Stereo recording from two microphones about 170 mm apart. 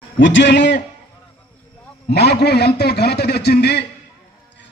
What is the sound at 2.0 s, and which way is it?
A man's voice, 75° left (ahead or behind).